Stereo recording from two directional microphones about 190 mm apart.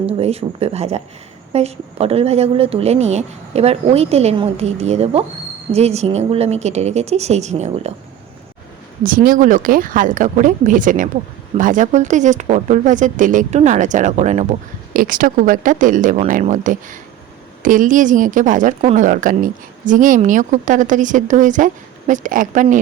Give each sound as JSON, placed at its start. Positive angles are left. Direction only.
{"t": 0.0, "sound": "a woman's voice", "side_deg": -35}
{"t": 9.0, "sound": "a woman's voice", "side_deg": -45}